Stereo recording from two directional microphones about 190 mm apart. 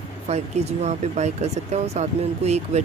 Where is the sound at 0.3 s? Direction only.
35° right (ahead or behind).